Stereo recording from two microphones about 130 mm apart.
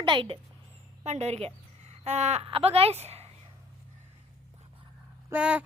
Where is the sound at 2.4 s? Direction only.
45° right (ahead or behind).